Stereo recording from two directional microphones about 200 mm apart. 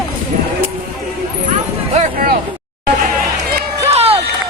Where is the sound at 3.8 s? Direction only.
30° right (ahead or behind).